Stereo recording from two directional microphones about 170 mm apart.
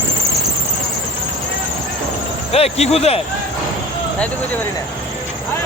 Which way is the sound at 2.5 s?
35° left (ahead or behind).